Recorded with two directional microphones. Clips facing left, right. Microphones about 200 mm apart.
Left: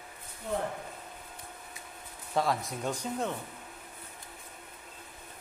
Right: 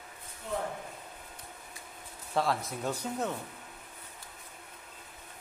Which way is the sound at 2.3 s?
Centre (ahead or behind).